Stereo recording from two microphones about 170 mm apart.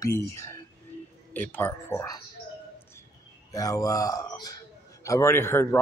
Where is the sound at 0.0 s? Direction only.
15° left (ahead or behind).